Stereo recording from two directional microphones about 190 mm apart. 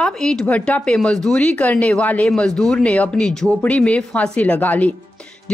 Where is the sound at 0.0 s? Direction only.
5° left (ahead or behind).